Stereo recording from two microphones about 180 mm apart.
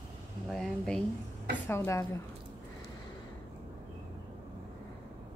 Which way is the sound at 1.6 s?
15° left (ahead or behind).